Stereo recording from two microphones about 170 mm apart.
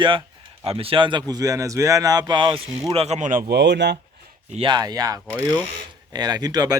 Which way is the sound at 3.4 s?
80° right.